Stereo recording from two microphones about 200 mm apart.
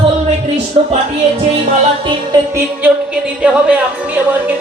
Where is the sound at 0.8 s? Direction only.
30° right (ahead or behind).